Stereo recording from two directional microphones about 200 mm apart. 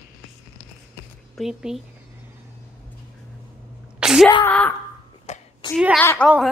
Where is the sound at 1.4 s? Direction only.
5° right (ahead or behind).